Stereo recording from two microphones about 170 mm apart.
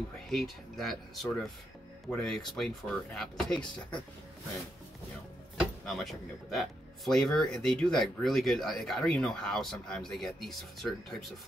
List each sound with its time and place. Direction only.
0.3 s speech: centre (ahead or behind)
5.6 s speech: centre (ahead or behind)